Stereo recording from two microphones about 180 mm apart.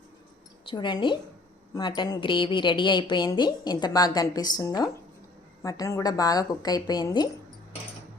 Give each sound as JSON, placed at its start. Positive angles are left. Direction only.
{"t": 0.6, "sound": "a woman's voice", "side_deg": 25}